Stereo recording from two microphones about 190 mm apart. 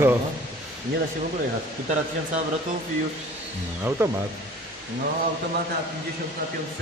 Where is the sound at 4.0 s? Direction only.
15° right (ahead or behind).